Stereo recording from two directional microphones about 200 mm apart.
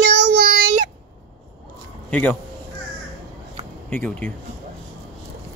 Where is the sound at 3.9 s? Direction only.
5° left (ahead or behind).